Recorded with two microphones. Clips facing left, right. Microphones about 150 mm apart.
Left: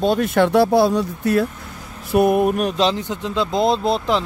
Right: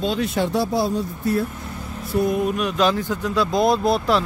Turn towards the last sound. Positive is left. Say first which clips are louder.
# even
turn(degrees=20)  # may be behind; listen again after turning